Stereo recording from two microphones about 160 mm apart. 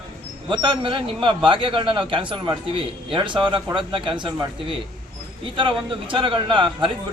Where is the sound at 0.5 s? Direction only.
30° right (ahead or behind).